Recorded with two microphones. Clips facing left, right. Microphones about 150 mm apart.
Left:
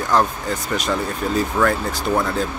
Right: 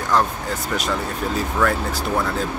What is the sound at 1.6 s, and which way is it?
Speech, 15° left (ahead or behind).